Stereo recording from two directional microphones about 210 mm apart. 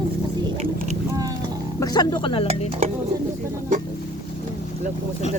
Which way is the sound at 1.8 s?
20° left (ahead or behind).